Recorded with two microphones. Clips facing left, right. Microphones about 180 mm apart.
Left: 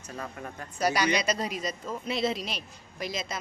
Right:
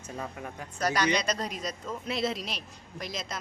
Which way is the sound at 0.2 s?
5° right (ahead or behind).